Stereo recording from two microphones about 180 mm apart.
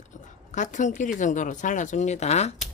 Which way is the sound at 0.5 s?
45° left (ahead or behind).